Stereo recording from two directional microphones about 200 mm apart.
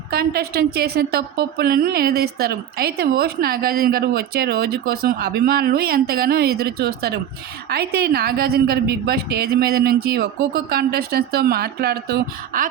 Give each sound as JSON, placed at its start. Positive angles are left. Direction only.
{"t": 0.1, "sound": "a woman's voice", "side_deg": -50}